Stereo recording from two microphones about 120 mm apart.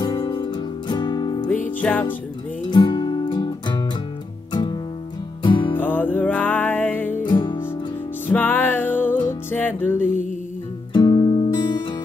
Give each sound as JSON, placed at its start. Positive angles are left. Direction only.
{"t": 0.0, "sound": "music", "side_deg": 40}
{"t": 1.8, "sound": "music", "side_deg": 15}
{"t": 2.7, "sound": "music", "side_deg": 40}
{"t": 5.8, "sound": "music", "side_deg": 15}
{"t": 7.2, "sound": "music", "side_deg": 40}
{"t": 8.3, "sound": "music", "side_deg": 15}
{"t": 10.9, "sound": "guitar", "side_deg": 35}